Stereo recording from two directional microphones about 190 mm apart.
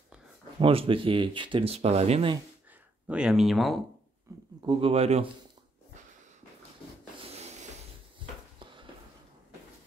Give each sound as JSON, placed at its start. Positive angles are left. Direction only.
{"t": 0.6, "sound": "speech", "side_deg": -30}
{"t": 3.1, "sound": "speech", "side_deg": -5}
{"t": 4.6, "sound": "speech", "side_deg": -25}
{"t": 7.2, "sound": "rub", "side_deg": -35}
{"t": 8.2, "sound": "a sound", "side_deg": -25}